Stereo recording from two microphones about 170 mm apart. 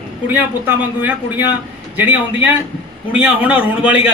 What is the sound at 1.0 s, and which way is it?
Speech, 10° right (ahead or behind).